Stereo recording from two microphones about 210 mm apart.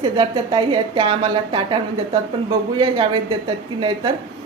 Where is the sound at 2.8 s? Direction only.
25° right (ahead or behind).